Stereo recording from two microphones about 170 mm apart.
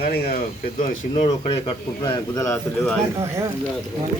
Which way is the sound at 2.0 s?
20° left (ahead or behind).